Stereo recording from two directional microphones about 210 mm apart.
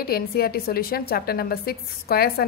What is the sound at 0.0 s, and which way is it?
A woman's voice, 45° left (ahead or behind).